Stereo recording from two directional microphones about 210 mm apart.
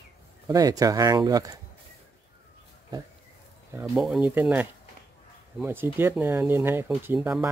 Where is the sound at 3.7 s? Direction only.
5° right (ahead or behind).